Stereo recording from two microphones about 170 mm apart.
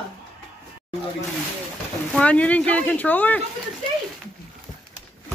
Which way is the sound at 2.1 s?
10° left (ahead or behind).